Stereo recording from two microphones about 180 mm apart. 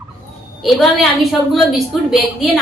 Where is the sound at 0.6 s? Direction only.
Centre (ahead or behind).